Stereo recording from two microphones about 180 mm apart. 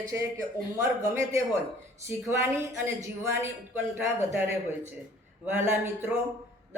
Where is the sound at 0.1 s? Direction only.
15° right (ahead or behind).